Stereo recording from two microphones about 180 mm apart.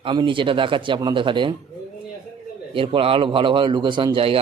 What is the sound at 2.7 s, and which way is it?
Speech, 30° right (ahead or behind).